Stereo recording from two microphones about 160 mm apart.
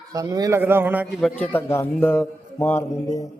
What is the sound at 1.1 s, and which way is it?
A man's voice, 10° left (ahead or behind).